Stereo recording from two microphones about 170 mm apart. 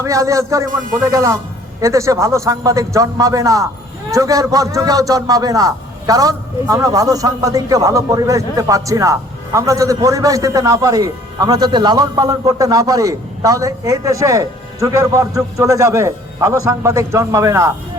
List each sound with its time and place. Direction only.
0.0 s a man's voice: 20° right (ahead or behind)